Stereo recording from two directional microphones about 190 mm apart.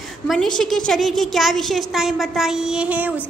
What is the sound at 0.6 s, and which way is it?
Speech, 5° left (ahead or behind).